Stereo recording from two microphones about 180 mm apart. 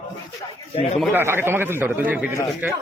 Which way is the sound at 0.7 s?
35° left (ahead or behind).